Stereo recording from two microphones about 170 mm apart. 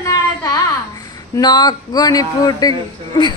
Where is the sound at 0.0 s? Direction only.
20° left (ahead or behind).